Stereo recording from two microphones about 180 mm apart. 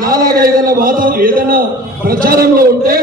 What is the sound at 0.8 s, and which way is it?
A man's voice, 50° right (ahead or behind).